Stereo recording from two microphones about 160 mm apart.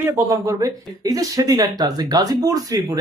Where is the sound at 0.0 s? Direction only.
20° right (ahead or behind).